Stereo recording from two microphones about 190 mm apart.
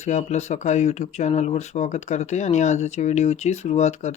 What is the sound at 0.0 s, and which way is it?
Speech, 40° left (ahead or behind).